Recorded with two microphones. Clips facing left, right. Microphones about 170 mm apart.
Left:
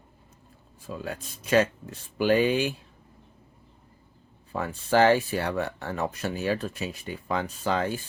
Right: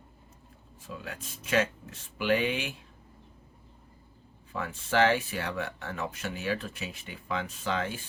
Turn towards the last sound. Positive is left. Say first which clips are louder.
# left 5 dB
turn(degrees=40)  # may be behind; listen again after turning